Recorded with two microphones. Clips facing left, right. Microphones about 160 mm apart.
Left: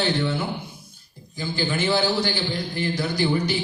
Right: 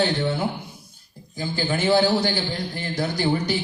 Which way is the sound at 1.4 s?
40° right (ahead or behind).